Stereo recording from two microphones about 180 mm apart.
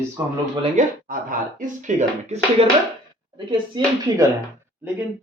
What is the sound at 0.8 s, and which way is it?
Speech, 45° right (ahead or behind).